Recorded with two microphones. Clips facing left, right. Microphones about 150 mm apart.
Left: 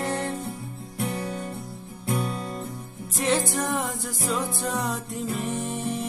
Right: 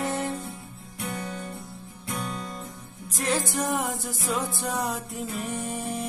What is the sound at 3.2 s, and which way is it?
Music, centre (ahead or behind).